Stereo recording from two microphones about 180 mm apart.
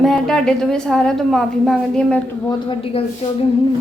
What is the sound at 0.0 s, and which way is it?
A woman's voice, centre (ahead or behind).